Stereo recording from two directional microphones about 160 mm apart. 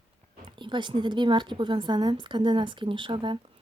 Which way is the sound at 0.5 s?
30° right (ahead or behind).